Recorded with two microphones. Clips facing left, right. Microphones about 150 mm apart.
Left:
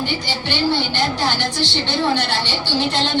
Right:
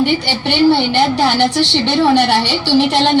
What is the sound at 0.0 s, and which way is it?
Speech, 70° right (ahead or behind).